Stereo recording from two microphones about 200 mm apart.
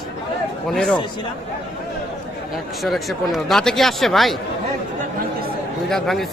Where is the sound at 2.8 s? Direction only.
Centre (ahead or behind).